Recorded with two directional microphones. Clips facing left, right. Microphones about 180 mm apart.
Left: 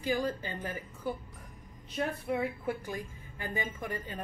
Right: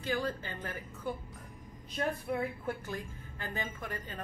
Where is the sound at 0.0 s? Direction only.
15° left (ahead or behind).